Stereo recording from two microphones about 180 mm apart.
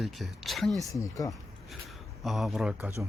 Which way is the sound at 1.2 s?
20° left (ahead or behind).